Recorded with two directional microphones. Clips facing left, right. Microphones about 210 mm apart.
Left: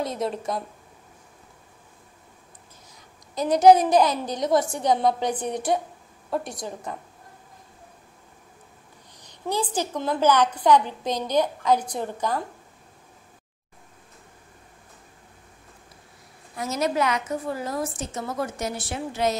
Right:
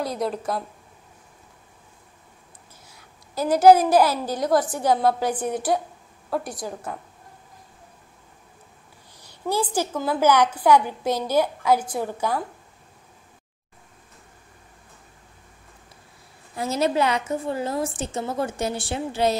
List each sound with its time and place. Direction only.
0.0 s a woman's voice: centre (ahead or behind)
2.9 s a woman's voice: 5° right (ahead or behind)
9.1 s a woman's voice: 10° right (ahead or behind)
16.5 s a woman's voice: 30° right (ahead or behind)